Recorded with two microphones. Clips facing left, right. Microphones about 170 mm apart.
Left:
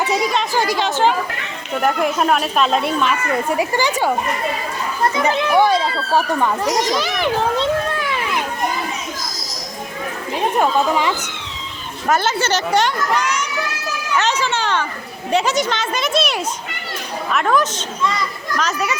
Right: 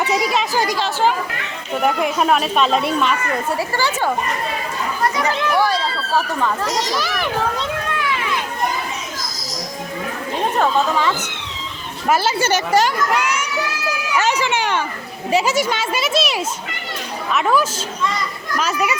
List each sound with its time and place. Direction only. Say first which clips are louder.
0.1 s speech: even; centre (ahead or behind)
3.6 s speech: left 2 dB; 15° left (ahead or behind)
5.1 s a child's voice: left 5 dB; 20° left (ahead or behind)
10.6 s speech: left 1 dB; 15° left (ahead or behind)
12.0 s a child's voice: right 1 dB; 10° right (ahead or behind)
14.1 s a sound: even; 10° right (ahead or behind)
15.3 s a child's voice: even; 5° right (ahead or behind)